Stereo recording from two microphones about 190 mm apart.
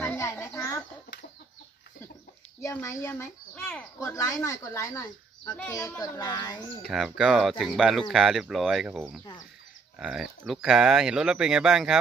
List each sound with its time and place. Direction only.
0.0 s a sound: 10° left (ahead or behind)
2.6 s speech: 15° left (ahead or behind)
6.9 s speech: 5° right (ahead or behind)